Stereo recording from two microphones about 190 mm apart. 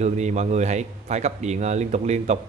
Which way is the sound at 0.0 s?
35° right (ahead or behind).